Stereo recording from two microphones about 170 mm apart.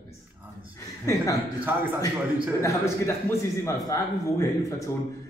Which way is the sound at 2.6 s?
15° left (ahead or behind).